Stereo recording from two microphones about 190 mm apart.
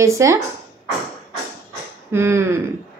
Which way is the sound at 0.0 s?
15° right (ahead or behind).